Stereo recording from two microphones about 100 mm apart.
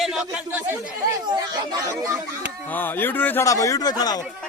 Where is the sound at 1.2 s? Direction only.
45° right (ahead or behind).